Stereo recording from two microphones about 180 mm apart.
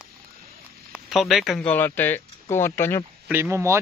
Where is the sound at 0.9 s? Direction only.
Centre (ahead or behind).